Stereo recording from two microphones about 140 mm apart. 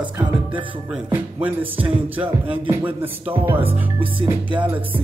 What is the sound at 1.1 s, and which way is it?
Music, 15° right (ahead or behind).